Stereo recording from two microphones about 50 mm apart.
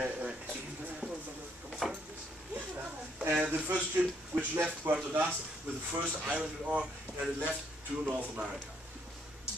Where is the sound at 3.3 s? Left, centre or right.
Right.